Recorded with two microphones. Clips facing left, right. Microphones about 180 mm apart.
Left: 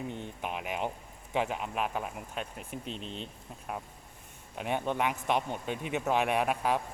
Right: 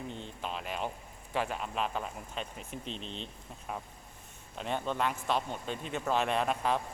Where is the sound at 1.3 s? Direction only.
15° left (ahead or behind).